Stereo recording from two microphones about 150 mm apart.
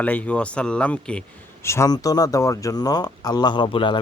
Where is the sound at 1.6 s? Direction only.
20° left (ahead or behind); by 4.0 s 35° left (ahead or behind).